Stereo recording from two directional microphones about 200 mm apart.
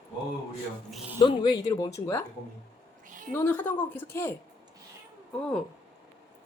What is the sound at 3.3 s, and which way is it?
Speech, 10° left (ahead or behind).